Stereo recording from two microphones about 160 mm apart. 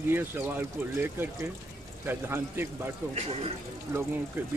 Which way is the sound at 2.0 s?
15° right (ahead or behind).